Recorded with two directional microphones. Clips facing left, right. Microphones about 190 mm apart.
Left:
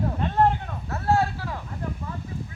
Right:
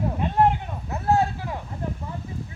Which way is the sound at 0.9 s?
20° right (ahead or behind).